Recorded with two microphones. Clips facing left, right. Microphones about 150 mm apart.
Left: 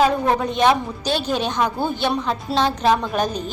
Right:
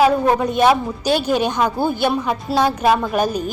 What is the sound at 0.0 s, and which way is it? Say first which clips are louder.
A woman's voice: right 3 dB; 5° right (ahead or behind).